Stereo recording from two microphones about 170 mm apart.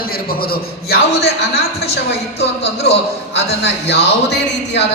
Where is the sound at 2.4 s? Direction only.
40° left (ahead or behind).